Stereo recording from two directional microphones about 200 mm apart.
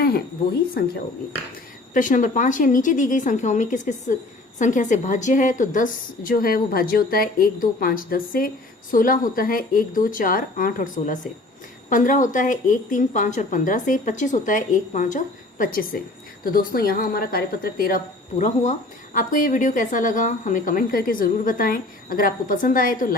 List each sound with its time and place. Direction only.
1.9 s a woman's voice: 40° left (ahead or behind)